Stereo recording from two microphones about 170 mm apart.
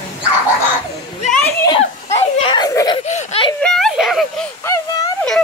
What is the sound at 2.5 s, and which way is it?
Giggle, 25° left (ahead or behind).